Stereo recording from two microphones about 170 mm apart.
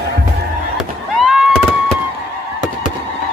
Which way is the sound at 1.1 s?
5° right (ahead or behind).